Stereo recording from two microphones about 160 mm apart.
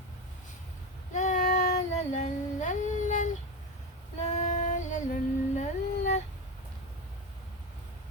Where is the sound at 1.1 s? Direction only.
50° left (ahead or behind).